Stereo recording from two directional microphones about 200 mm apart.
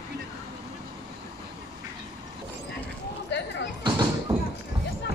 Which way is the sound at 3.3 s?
60° left (ahead or behind).